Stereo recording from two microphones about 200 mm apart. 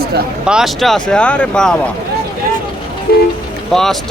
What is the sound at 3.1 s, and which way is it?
Music, 50° left (ahead or behind).